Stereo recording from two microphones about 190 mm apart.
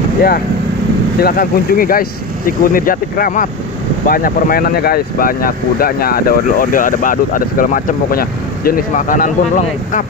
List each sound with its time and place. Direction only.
1.2 s speech: 50° left (ahead or behind)